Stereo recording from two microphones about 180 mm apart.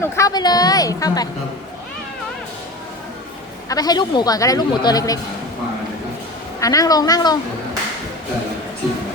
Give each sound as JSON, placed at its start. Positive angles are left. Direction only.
{"t": 0.0, "sound": "speech", "side_deg": 20}
{"t": 3.7, "sound": "speech", "side_deg": 20}
{"t": 6.6, "sound": "speech", "side_deg": 20}